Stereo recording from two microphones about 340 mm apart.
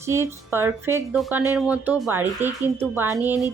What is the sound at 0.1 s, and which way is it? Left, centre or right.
A woman's voice, centre.